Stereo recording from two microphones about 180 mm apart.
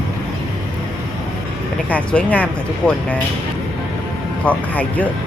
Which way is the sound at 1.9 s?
10° left (ahead or behind).